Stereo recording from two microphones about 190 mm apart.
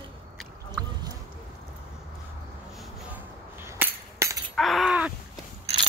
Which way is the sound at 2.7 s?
10° right (ahead or behind).